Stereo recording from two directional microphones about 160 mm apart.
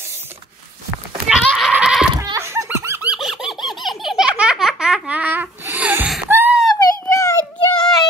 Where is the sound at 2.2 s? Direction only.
20° right (ahead or behind).